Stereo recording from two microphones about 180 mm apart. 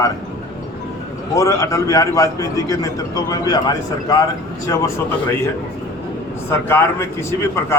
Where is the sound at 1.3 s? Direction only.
15° left (ahead or behind).